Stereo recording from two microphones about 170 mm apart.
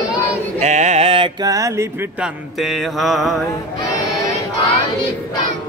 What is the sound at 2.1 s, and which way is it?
Mantra, centre (ahead or behind).